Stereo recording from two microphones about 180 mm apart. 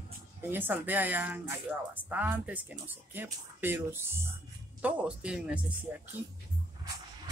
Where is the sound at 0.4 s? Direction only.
10° right (ahead or behind).